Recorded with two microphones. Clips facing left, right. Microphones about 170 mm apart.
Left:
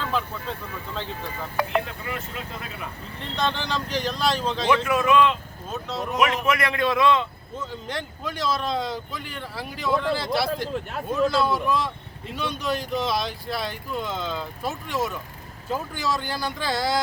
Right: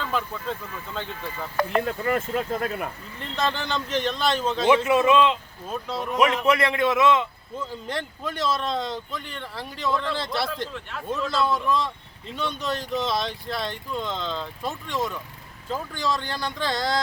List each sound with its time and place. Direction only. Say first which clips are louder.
2.0 s speech: right 9 dB; 45° right (ahead or behind)
3.2 s speech: even; centre (ahead or behind)
4.7 s a man's voice: right 2 dB; 25° right (ahead or behind)
5.7 s speech: even; 10° right (ahead or behind)
6.1 s a man's voice: right 2 dB; 30° right (ahead or behind)
7.7 s speech: right 1 dB; centre (ahead or behind)